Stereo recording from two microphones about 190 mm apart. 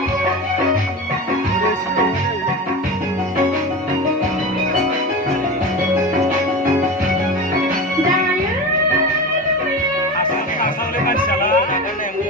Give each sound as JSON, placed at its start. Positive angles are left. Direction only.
{"t": 10.6, "sound": "music", "side_deg": 45}